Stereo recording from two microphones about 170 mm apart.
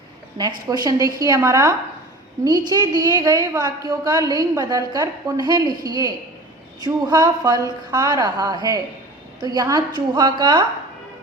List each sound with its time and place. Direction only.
0.3 s a woman's voice: 25° right (ahead or behind)